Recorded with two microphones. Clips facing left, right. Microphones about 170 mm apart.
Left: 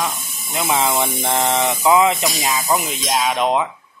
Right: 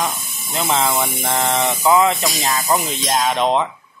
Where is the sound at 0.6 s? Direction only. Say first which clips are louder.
Even; 10° left (ahead or behind).